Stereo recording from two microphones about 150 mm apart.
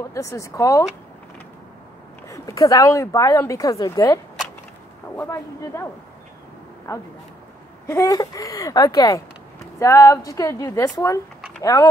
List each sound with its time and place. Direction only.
0.1 s speech: 20° left (ahead or behind)
2.2 s speech: 20° left (ahead or behind)
6.9 s speech: 20° left (ahead or behind)